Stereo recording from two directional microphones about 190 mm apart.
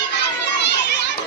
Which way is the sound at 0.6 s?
65° left (ahead or behind).